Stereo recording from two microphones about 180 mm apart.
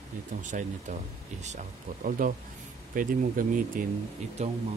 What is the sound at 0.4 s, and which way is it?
Speech, 45° right (ahead or behind).